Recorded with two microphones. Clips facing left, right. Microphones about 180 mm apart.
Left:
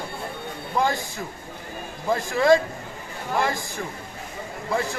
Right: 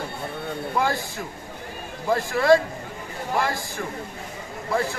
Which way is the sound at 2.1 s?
20° left (ahead or behind).